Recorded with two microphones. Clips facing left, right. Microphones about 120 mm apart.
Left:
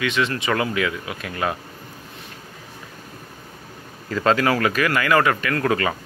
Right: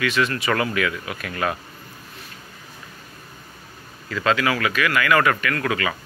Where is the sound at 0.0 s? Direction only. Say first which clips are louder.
Even; 20° left (ahead or behind).